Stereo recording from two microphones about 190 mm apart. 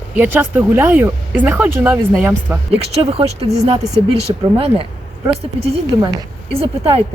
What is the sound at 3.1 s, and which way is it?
Speech, 30° right (ahead or behind).